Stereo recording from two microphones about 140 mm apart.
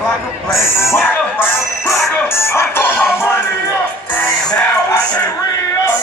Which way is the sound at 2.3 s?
20° left (ahead or behind).